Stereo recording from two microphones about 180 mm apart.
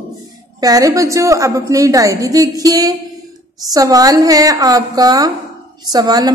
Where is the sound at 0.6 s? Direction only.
20° right (ahead or behind).